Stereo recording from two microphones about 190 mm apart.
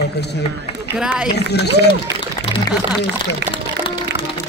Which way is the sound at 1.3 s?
60° left (ahead or behind).